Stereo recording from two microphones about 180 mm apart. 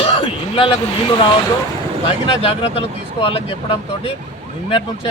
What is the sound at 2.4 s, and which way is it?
Speech, 30° left (ahead or behind).